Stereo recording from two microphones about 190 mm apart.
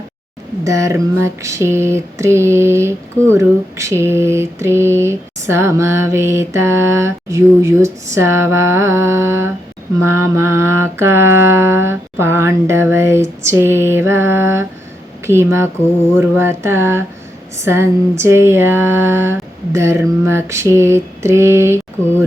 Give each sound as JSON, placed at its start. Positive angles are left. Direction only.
{"t": 0.6, "sound": "mantra", "side_deg": -15}